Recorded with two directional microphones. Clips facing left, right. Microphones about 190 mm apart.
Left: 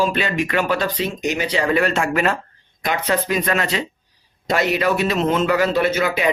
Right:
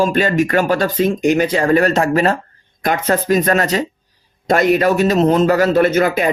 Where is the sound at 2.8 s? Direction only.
50° right (ahead or behind).